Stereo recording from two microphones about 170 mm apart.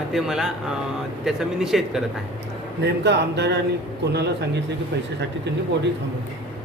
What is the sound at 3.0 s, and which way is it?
Speech, 85° right.